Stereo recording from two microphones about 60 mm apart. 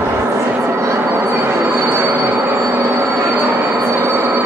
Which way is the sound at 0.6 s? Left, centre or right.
Right.